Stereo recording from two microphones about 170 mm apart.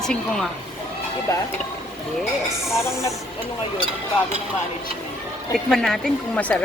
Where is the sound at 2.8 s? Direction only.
15° left (ahead or behind).